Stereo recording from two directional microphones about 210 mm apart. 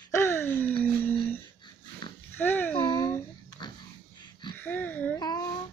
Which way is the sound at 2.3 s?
10° left (ahead or behind).